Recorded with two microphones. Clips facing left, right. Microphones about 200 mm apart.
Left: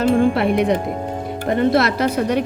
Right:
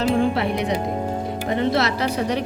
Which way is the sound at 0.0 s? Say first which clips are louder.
Left 4 dB; 55° left (ahead or behind).